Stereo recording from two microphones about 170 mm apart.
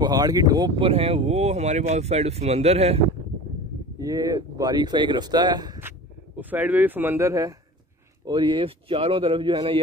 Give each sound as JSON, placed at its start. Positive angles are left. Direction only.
{"t": 0.0, "sound": "speech", "side_deg": -20}
{"t": 4.0, "sound": "speech", "side_deg": -20}
{"t": 5.8, "sound": "speech", "side_deg": -10}